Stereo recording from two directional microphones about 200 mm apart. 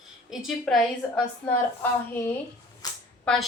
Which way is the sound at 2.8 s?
20° left (ahead or behind).